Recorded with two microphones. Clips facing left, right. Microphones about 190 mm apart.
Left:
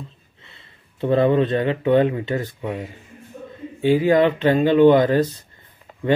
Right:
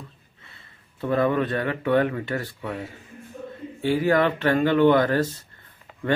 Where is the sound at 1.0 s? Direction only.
25° left (ahead or behind).